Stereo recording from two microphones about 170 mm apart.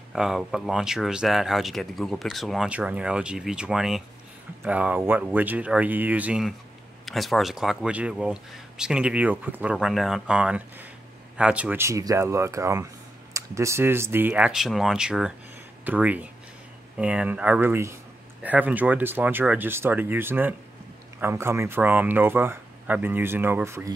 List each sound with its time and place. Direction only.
0.1 s speech: centre (ahead or behind)